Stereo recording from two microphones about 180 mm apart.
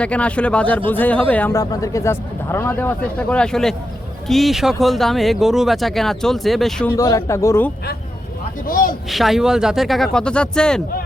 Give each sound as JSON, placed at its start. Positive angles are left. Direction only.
{"t": 0.0, "sound": "speech", "side_deg": 5}
{"t": 6.9, "sound": "speech", "side_deg": 20}
{"t": 8.6, "sound": "a man's voice", "side_deg": 50}
{"t": 9.0, "sound": "speech", "side_deg": 0}